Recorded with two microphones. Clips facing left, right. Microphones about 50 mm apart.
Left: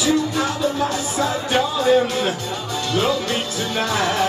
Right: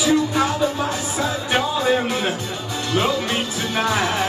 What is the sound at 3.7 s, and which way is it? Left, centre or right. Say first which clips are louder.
Music: right 1 dB; centre.